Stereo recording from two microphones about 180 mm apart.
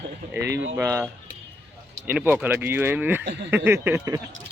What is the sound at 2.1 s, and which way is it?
Speech, 10° right (ahead or behind).